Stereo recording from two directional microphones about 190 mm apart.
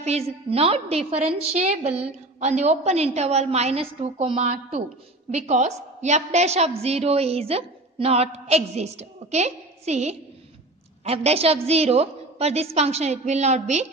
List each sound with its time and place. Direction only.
0.0 s a woman's voice: 35° right (ahead or behind)